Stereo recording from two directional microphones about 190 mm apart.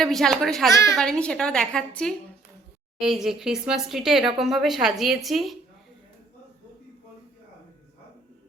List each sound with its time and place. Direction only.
0.0 s speech: centre (ahead or behind)
0.7 s a woman's voice: 15° left (ahead or behind)
0.9 s speech: 5° left (ahead or behind)